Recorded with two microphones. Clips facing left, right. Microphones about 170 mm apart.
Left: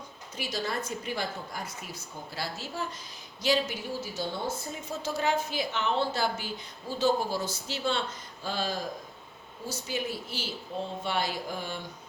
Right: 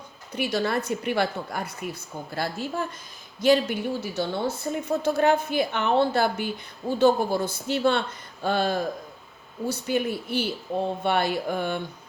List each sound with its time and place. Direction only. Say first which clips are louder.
0.3 s a woman's voice: right 8 dB; 65° right (ahead or behind)